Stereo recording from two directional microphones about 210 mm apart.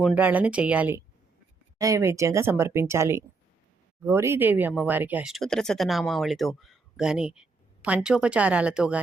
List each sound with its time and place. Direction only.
0.0 s a woman's voice: 5° right (ahead or behind)